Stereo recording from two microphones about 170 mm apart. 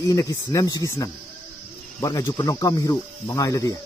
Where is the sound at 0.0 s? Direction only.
20° left (ahead or behind).